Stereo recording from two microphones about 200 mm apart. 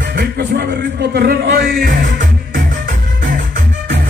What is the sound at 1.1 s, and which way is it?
Speech, 50° right (ahead or behind).